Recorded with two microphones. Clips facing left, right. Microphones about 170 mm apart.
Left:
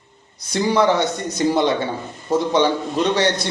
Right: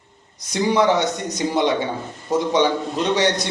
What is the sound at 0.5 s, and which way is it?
A man's voice, 15° right (ahead or behind).